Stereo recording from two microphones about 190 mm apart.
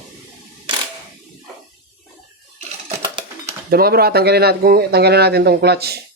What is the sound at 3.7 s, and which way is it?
Speech, 55° right (ahead or behind).